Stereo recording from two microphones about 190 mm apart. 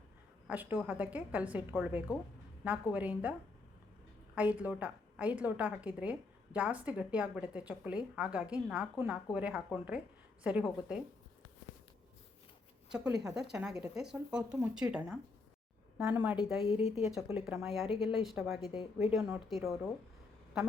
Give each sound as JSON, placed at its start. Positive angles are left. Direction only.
{"t": 0.4, "sound": "a woman's voice", "side_deg": -10}
{"t": 4.4, "sound": "a woman's voice", "side_deg": -10}
{"t": 13.3, "sound": "a woman's voice", "side_deg": -5}
{"t": 16.6, "sound": "a woman's voice", "side_deg": 30}
{"t": 17.2, "sound": "a woman's voice", "side_deg": -15}
{"t": 17.4, "sound": "speech", "side_deg": 0}
{"t": 18.6, "sound": "speech", "side_deg": 20}
{"t": 19.1, "sound": "speech", "side_deg": -5}